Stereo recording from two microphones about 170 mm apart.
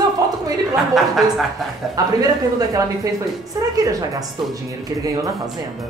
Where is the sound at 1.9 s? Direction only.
20° right (ahead or behind).